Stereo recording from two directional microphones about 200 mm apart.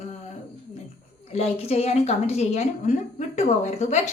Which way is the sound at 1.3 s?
30° left (ahead or behind).